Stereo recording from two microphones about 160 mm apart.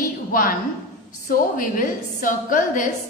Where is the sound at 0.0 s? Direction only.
60° left (ahead or behind).